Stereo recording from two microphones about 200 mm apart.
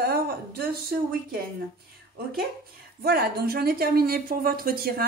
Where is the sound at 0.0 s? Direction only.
50° right (ahead or behind).